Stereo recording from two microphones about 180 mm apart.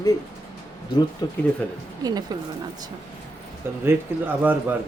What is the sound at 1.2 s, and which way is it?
Speech, 20° left (ahead or behind).